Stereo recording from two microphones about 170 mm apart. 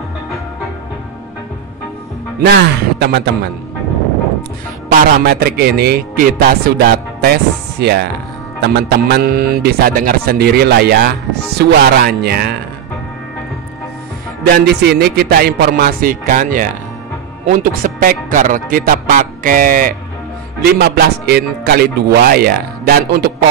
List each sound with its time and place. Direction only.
2.4 s speech: 75° right (ahead or behind)
5.2 s speech: 65° right (ahead or behind); by 11.1 s 80° right
11.5 s speech: 70° right (ahead or behind)
14.4 s speech: 65° right (ahead or behind)
20.6 s speech: 65° right (ahead or behind)